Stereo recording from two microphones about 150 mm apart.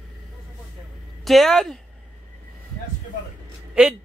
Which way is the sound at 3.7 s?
5° right (ahead or behind).